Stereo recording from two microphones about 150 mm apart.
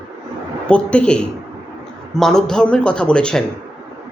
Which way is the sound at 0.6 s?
10° left (ahead or behind).